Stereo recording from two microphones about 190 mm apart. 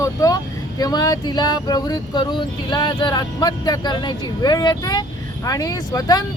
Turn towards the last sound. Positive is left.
turn(degrees=20)  # may be behind; listen again after turning